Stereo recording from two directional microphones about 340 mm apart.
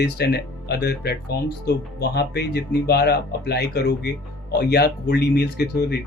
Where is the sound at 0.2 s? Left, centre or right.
Left.